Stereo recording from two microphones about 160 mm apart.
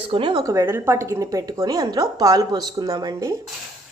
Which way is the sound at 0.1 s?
30° right (ahead or behind).